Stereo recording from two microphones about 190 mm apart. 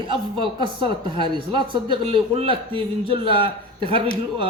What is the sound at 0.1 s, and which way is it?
Speech, 25° right (ahead or behind).